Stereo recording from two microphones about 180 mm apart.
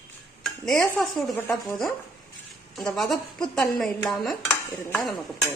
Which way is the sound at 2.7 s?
Centre (ahead or behind).